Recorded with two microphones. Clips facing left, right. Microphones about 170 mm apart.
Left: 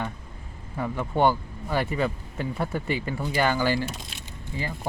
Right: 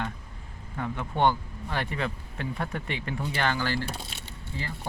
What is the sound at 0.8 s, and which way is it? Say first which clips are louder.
Speech: left 3 dB; 5° left (ahead or behind).